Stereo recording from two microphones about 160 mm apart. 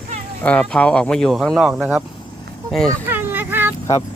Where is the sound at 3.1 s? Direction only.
10° right (ahead or behind).